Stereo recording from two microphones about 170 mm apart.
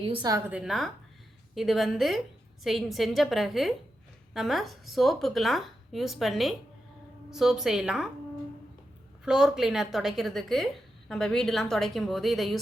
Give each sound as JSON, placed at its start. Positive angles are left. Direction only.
{"t": 0.0, "sound": "a woman's voice", "side_deg": -30}
{"t": 0.5, "sound": "a woman's voice", "side_deg": 0}
{"t": 9.2, "sound": "a woman's voice", "side_deg": -5}